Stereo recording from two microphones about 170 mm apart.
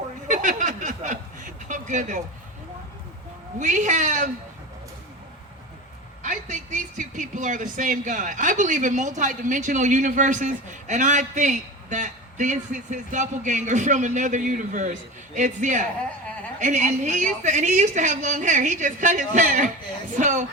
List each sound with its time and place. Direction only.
0.3 s a sound: 45° right (ahead or behind)
3.6 s speech: 45° right (ahead or behind)
6.2 s speech: 50° right (ahead or behind)